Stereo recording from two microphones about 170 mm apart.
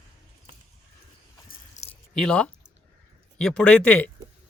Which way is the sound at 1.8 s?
45° left (ahead or behind).